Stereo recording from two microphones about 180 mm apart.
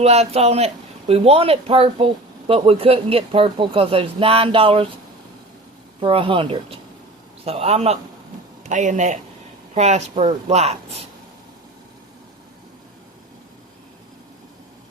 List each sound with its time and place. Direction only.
0.0 s speech: 35° right (ahead or behind)
6.0 s speech: 30° right (ahead or behind)